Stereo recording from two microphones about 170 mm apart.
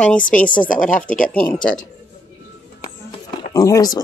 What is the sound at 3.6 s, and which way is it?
Speech, 20° left (ahead or behind).